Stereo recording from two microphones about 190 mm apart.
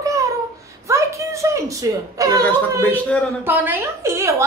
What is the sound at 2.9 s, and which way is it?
Speech, 5° left (ahead or behind).